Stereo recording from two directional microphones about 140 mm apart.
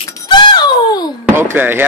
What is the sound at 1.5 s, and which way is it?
Speech, 15° right (ahead or behind).